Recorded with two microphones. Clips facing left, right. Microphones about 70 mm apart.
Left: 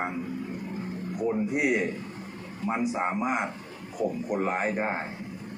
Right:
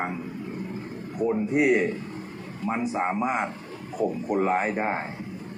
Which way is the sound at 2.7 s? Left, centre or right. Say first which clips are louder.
Right 1 dB; centre.